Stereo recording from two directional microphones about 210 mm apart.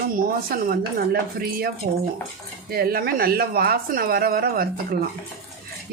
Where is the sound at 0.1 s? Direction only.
45° right (ahead or behind).